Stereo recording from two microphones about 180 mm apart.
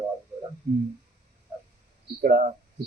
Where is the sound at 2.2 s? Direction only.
50° right (ahead or behind).